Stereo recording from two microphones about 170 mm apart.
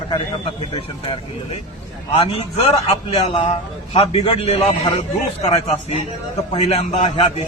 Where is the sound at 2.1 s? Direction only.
35° left (ahead or behind).